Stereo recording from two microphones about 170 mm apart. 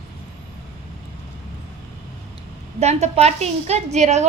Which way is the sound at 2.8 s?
40° right (ahead or behind).